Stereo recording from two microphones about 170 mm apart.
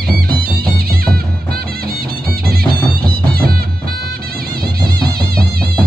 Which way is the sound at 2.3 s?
65° right (ahead or behind).